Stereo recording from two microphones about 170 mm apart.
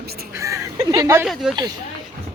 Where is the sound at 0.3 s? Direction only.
20° right (ahead or behind).